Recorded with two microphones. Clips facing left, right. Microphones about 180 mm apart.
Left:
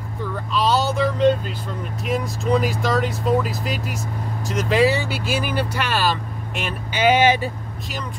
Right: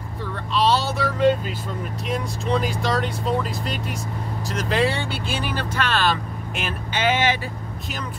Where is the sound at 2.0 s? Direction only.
5° left (ahead or behind).